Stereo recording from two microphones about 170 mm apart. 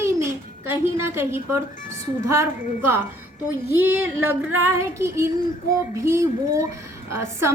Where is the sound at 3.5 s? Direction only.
10° right (ahead or behind).